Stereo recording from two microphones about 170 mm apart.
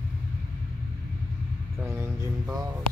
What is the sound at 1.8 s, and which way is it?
Speech, 15° right (ahead or behind).